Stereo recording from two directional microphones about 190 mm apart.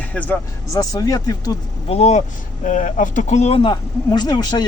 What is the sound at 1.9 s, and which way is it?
Speech, 35° left (ahead or behind).